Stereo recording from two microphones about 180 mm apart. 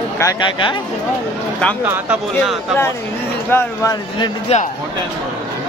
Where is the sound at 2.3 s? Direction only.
Centre (ahead or behind).